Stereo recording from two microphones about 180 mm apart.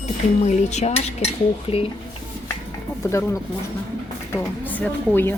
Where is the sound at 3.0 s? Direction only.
15° left (ahead or behind).